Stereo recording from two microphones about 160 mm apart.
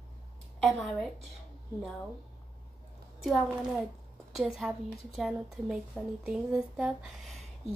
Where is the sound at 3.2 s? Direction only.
Centre (ahead or behind).